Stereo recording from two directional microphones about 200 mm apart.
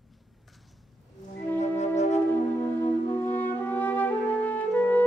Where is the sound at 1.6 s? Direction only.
35° left (ahead or behind).